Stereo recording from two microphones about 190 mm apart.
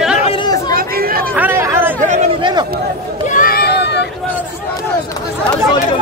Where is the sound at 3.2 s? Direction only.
45° left (ahead or behind); by 4.1 s 60° left (ahead or behind).